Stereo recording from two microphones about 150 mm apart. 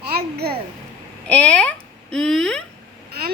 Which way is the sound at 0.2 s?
90° right.